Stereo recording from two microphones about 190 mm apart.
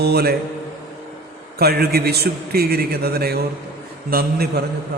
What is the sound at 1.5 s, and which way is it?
A man's voice, 55° right (ahead or behind).